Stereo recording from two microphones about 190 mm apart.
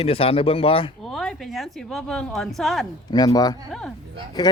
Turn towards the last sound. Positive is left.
turn(degrees=20)  # may be behind; listen again after turning